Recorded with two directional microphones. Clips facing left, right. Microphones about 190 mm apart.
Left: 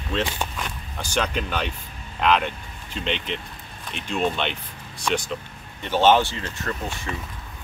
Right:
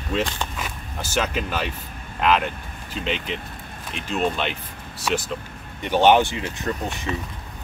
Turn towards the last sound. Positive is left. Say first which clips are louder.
# right 3 dB
turn(degrees=-20)  # may be behind; listen again after turning